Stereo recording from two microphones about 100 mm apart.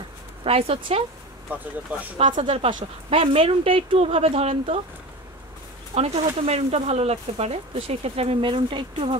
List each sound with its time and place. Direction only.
0.4 s speech: 80° right
1.5 s speech: 15° right (ahead or behind)
2.1 s speech: 60° right (ahead or behind); by 4.8 s 85° right
5.9 s speech: 90° right; by 9.2 s 55° right (ahead or behind)